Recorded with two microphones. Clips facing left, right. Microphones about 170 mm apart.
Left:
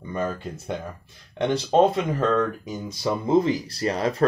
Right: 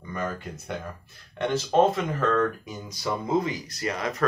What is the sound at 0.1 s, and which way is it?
Speech, 25° left (ahead or behind).